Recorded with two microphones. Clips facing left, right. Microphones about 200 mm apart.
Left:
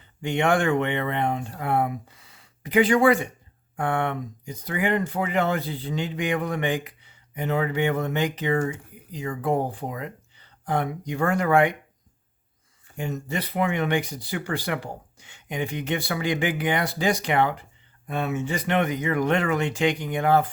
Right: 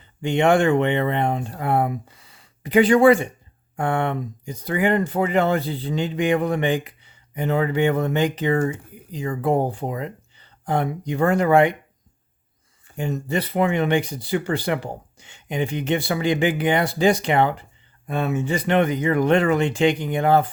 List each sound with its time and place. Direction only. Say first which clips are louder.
0.2 s speech: right 5 dB; 25° right (ahead or behind)
13.0 s speech: right 5 dB; 30° right (ahead or behind)